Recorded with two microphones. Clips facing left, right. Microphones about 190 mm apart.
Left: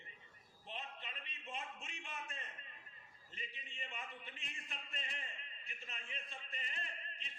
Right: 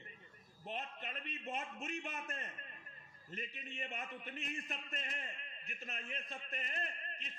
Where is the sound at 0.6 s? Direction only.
45° right (ahead or behind).